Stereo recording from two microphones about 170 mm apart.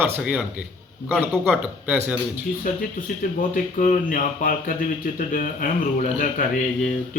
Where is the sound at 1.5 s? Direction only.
10° right (ahead or behind).